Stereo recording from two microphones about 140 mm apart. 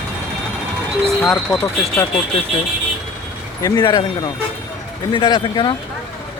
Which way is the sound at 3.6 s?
30° left (ahead or behind).